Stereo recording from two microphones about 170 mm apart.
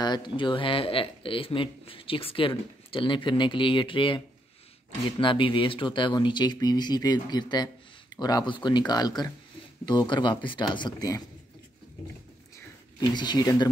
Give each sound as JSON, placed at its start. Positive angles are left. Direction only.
{"t": 0.0, "sound": "speech", "side_deg": 25}
{"t": 5.2, "sound": "speech", "side_deg": 30}
{"t": 13.1, "sound": "speech", "side_deg": 25}